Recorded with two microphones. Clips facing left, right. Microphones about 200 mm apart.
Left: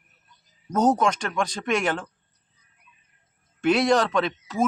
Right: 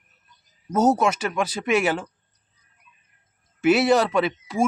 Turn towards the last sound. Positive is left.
turn(degrees=-10)  # may be behind; listen again after turning